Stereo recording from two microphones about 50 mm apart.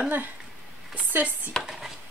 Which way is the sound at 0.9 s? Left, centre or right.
Right.